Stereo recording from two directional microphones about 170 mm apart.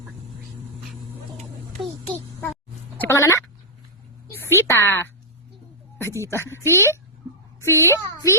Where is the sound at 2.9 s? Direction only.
15° left (ahead or behind).